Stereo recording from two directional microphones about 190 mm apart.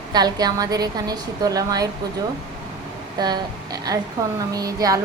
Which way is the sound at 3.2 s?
20° right (ahead or behind).